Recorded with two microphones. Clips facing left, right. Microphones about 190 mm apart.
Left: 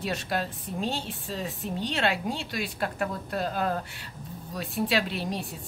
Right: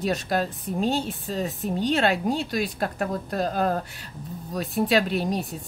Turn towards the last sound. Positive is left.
turn(degrees=-45)  # may be behind; listen again after turning